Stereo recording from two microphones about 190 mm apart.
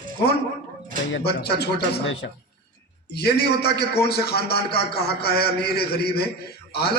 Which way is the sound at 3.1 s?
60° left (ahead or behind).